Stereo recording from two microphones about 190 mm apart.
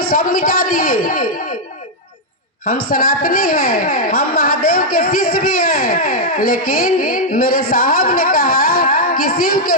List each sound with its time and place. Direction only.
0.0 s a woman's voice: 50° left (ahead or behind)
2.6 s a woman's voice: 50° left (ahead or behind)